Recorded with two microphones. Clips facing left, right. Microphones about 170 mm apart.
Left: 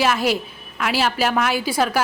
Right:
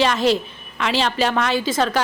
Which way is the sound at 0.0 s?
10° left (ahead or behind).